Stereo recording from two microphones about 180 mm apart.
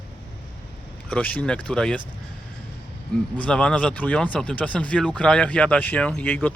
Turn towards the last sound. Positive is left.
turn(degrees=10)  # may be behind; listen again after turning